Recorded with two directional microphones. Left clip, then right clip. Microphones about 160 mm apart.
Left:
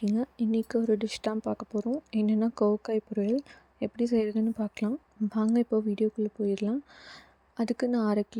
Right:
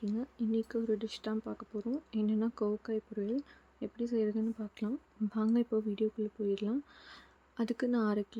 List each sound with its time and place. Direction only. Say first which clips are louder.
0.0 s speech: left 7 dB; 50° left (ahead or behind); by 8.4 s 30° left (ahead or behind)